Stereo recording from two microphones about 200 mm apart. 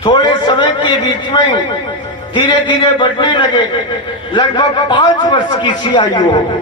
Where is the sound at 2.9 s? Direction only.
25° left (ahead or behind).